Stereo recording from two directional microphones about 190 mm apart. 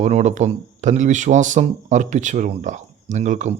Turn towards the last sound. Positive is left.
turn(degrees=-40)  # may be behind; listen again after turning